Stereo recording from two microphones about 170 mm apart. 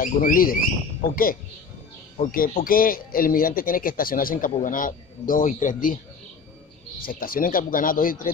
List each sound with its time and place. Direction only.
0.0 s a man's voice: 55° left (ahead or behind)
7.1 s speech: 55° left (ahead or behind)